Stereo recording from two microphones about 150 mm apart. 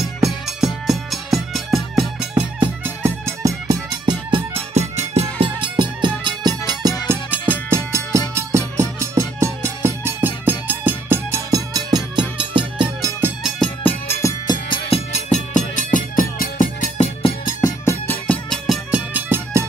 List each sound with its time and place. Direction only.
0.2 s music: centre (ahead or behind)
2.8 s music: 15° right (ahead or behind)
4.0 s music: 35° right (ahead or behind)
7.1 s music: 10° right (ahead or behind); by 12.8 s 35° right (ahead or behind)
14.2 s music: 25° left (ahead or behind)
14.9 s music: 45° left (ahead or behind); by 16.9 s 65° left (ahead or behind)
17.0 s music: 40° left (ahead or behind)
17.6 s music: 20° left (ahead or behind)
18.7 s music: 10° right (ahead or behind)